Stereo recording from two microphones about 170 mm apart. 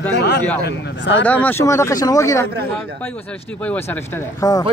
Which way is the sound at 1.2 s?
10° left (ahead or behind).